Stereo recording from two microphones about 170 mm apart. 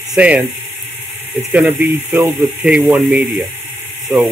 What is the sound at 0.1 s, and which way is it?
Speech, 5° right (ahead or behind).